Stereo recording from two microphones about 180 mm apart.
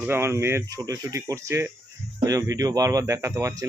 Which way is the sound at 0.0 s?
15° right (ahead or behind).